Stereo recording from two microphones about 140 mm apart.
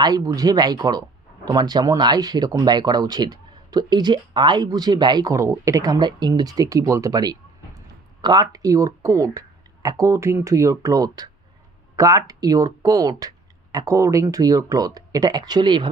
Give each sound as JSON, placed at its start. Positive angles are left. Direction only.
{"t": 0.0, "sound": "speech", "side_deg": -30}